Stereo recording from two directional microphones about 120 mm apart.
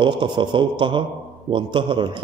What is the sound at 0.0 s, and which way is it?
A man's voice, 40° right (ahead or behind).